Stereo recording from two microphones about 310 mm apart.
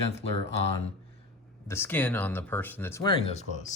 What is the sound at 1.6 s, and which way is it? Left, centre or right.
Speech, centre.